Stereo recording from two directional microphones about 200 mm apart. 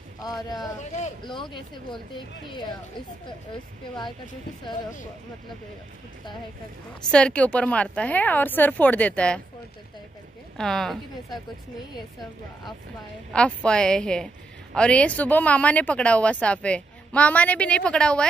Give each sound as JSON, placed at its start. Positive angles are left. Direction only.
{"t": 0.2, "sound": "speech", "side_deg": 20}
{"t": 7.1, "sound": "a woman's voice", "side_deg": 5}
{"t": 10.6, "sound": "a woman's voice", "side_deg": 0}
{"t": 13.3, "sound": "a woman's voice", "side_deg": 5}